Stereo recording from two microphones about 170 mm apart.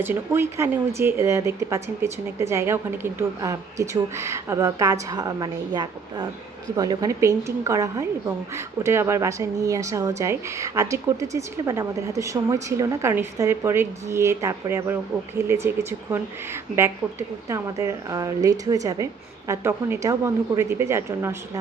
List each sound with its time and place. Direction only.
0.0 s a woman's voice: 15° right (ahead or behind)